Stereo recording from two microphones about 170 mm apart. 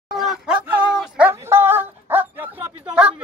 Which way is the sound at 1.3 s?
15° right (ahead or behind).